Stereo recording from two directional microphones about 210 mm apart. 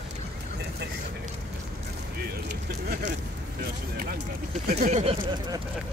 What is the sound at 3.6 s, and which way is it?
Speech, 45° right (ahead or behind).